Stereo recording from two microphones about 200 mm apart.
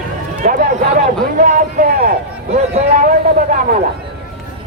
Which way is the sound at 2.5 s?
30° right (ahead or behind).